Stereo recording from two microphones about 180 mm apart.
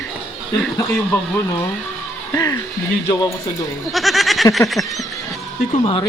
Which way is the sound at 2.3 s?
20° left (ahead or behind).